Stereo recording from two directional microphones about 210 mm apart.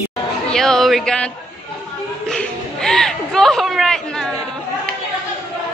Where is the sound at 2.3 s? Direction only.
Centre (ahead or behind).